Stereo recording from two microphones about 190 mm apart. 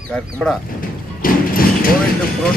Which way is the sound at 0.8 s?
50° left (ahead or behind).